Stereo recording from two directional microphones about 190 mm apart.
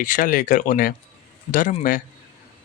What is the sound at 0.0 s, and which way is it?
A man's voice, 45° left (ahead or behind).